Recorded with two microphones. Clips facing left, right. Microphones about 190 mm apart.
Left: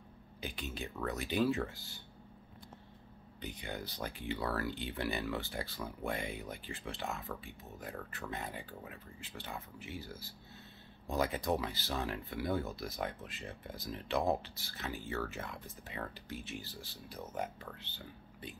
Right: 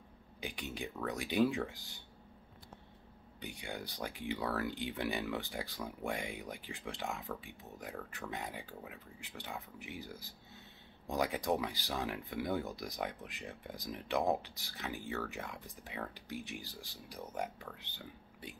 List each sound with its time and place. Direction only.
0.4 s speech: 15° right (ahead or behind)
3.3 s speech: 10° right (ahead or behind)